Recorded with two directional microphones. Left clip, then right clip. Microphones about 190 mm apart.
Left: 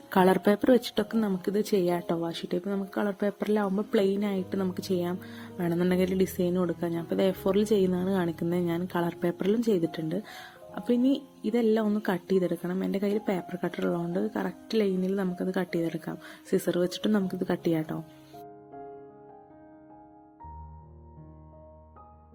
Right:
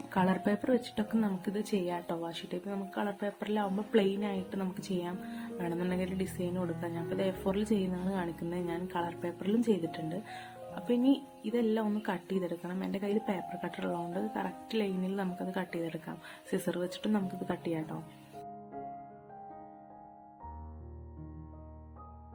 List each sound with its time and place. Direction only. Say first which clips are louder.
0.1 s a woman's voice: left 9 dB; 40° left (ahead or behind)